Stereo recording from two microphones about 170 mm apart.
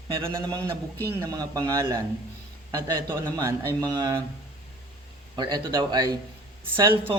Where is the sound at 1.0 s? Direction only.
20° right (ahead or behind).